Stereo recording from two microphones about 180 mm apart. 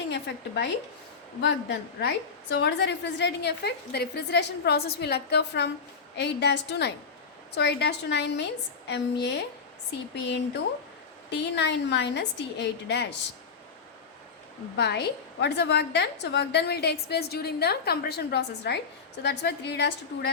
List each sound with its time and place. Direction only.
0.1 s a woman's voice: 70° left (ahead or behind)
11.3 s a woman's voice: 70° left (ahead or behind)
14.8 s a woman's voice: 70° left (ahead or behind)